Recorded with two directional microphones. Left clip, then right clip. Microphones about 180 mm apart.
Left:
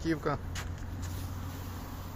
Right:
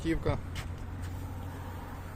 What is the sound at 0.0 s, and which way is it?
Speech, 10° right (ahead or behind).